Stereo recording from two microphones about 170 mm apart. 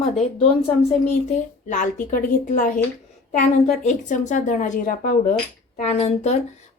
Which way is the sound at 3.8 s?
45° left (ahead or behind).